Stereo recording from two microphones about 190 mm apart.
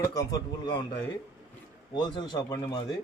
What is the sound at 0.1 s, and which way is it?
Speech, 20° left (ahead or behind).